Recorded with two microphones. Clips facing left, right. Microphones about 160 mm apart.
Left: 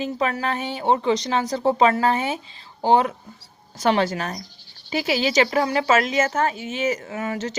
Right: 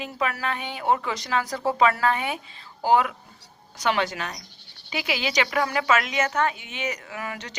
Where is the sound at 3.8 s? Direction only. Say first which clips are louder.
Left 5 dB; 40° left (ahead or behind).